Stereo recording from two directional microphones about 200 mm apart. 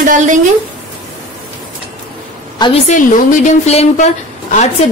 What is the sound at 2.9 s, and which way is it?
A woman's voice, 35° left (ahead or behind).